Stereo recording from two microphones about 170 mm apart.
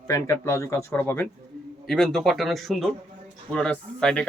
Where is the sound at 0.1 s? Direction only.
15° left (ahead or behind).